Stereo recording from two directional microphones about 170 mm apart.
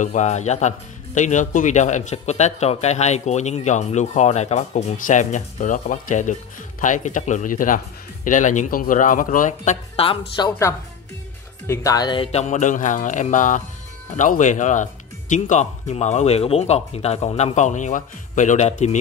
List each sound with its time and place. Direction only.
0.0 s speech: 45° left (ahead or behind)
11.6 s speech: 15° left (ahead or behind); by 18.9 s 45° left (ahead or behind)